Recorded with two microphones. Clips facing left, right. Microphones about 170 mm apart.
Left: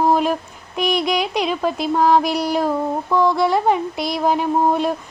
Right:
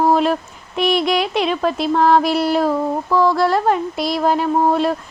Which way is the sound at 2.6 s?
15° left (ahead or behind).